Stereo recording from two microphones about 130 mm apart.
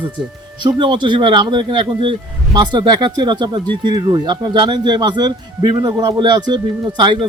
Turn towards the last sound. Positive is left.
turn(degrees=-35)  # may be behind; listen again after turning